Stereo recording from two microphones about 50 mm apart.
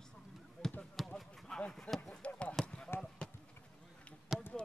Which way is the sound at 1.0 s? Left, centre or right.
Centre.